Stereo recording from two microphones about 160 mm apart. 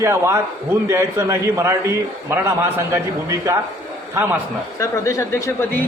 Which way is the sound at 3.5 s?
15° right (ahead or behind).